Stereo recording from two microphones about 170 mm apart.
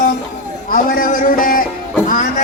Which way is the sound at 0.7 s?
55° left (ahead or behind).